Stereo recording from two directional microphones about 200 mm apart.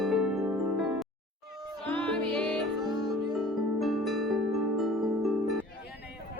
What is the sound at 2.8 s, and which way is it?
Music, 20° right (ahead or behind).